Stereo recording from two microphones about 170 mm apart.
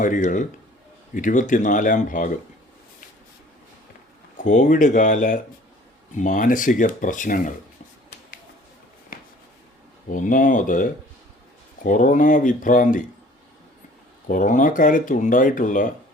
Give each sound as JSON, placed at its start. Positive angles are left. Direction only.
{"t": 0.0, "sound": "speech", "side_deg": 50}
{"t": 4.4, "sound": "speech", "side_deg": 45}
{"t": 10.1, "sound": "speech", "side_deg": 50}
{"t": 14.3, "sound": "speech", "side_deg": 50}